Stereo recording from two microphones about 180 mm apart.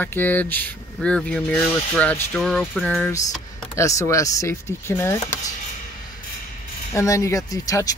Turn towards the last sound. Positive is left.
turn(degrees=20)  # may be behind; listen again after turning